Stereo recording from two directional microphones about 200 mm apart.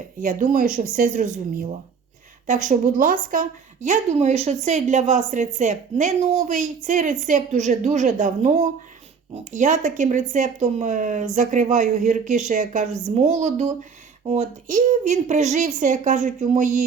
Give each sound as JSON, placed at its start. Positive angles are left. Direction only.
{"t": 0.2, "sound": "a woman's voice", "side_deg": -40}